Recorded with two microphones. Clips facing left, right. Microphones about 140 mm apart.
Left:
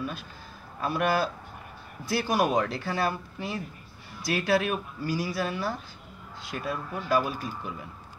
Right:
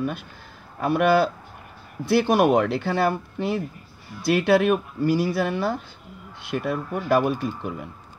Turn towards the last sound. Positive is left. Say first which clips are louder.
# right 7 dB
turn(degrees=-60)  # may be behind; listen again after turning